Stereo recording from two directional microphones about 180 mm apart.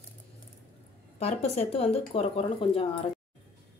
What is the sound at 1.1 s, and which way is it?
Speech, 35° left (ahead or behind).